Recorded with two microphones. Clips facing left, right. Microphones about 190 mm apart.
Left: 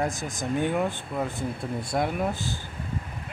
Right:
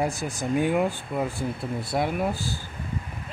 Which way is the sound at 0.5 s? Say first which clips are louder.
Right 3 dB; 10° right (ahead or behind).